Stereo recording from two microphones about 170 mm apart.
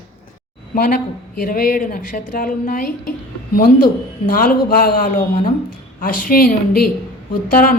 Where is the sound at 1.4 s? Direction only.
55° left (ahead or behind).